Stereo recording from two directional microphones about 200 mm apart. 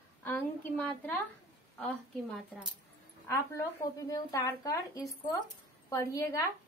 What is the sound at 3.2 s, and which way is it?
Speech, 15° left (ahead or behind).